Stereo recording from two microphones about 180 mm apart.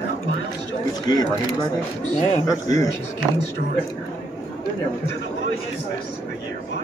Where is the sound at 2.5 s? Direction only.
20° left (ahead or behind).